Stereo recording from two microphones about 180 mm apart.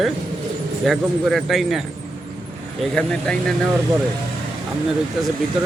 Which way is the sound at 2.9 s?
5° left (ahead or behind).